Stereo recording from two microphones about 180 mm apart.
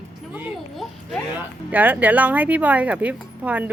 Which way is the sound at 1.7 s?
10° right (ahead or behind).